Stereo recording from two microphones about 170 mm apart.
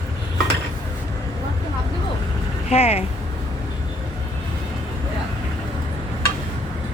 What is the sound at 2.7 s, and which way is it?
Speech, 35° left (ahead or behind).